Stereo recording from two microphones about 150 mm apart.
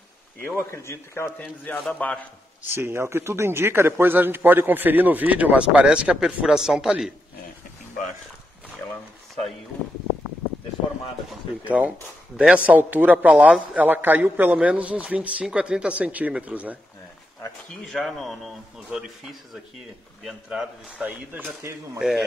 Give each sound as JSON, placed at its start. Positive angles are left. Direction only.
{"t": 0.5, "sound": "a man's voice", "side_deg": 15}
{"t": 2.7, "sound": "a man's voice", "side_deg": -15}
{"t": 11.2, "sound": "a man's voice", "side_deg": -10}
{"t": 17.8, "sound": "a man's voice", "side_deg": 0}